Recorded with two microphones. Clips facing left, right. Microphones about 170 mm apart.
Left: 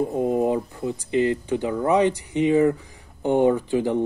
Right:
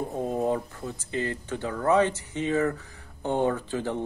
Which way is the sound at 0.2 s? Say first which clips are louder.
Left 4 dB; 15° left (ahead or behind).